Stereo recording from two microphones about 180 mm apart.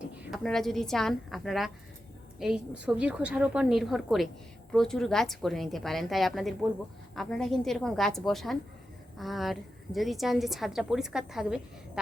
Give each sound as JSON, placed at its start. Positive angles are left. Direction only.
{"t": 0.2, "sound": "a woman's voice", "side_deg": 0}